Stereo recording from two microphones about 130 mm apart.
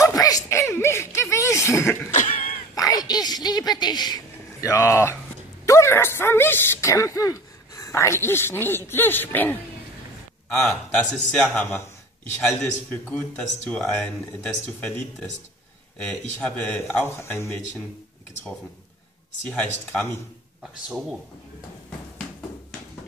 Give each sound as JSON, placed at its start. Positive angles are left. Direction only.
{"t": 0.0, "sound": "a sound", "side_deg": 25}
{"t": 2.0, "sound": "cough", "side_deg": 70}
{"t": 2.7, "sound": "a sound", "side_deg": 30}
{"t": 5.7, "sound": "speech", "side_deg": 20}
{"t": 13.1, "sound": "speech", "side_deg": 10}
{"t": 19.4, "sound": "speech", "side_deg": 10}